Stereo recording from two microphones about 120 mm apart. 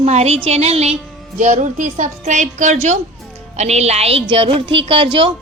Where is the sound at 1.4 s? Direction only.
85° right.